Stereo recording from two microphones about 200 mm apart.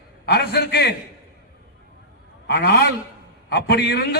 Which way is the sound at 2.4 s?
55° left (ahead or behind).